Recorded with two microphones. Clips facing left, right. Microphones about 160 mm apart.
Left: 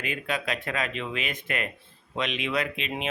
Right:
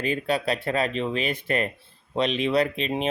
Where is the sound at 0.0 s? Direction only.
35° right (ahead or behind).